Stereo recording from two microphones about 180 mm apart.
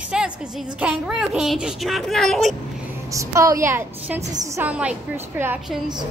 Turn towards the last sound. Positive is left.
turn(degrees=-10)  # may be behind; listen again after turning